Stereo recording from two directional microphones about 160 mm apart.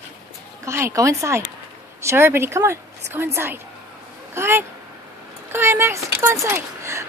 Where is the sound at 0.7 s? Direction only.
15° right (ahead or behind).